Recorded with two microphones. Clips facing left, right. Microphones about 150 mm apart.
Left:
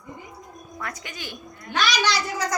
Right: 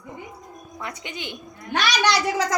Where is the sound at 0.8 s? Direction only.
20° right (ahead or behind).